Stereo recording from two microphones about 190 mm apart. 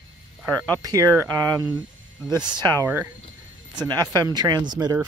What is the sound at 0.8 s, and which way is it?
Speech, 20° right (ahead or behind).